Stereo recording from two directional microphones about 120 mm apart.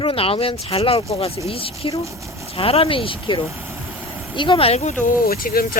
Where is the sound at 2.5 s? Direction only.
55° left (ahead or behind).